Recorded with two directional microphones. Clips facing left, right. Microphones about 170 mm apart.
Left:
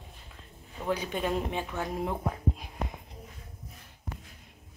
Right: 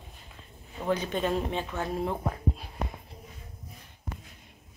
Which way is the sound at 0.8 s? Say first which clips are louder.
Right 2 dB; 10° left (ahead or behind).